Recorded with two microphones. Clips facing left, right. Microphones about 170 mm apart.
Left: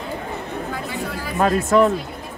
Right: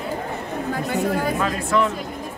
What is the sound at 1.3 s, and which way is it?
Speech, 45° left (ahead or behind).